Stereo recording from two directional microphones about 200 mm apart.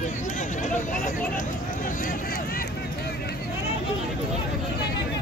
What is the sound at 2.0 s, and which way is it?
Vehicle, 45° left (ahead or behind).